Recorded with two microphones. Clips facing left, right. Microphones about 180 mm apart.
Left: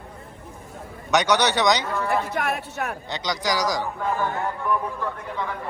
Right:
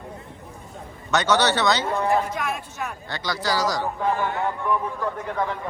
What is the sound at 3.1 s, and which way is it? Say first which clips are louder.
Speech: right 1 dB; 15° left (ahead or behind).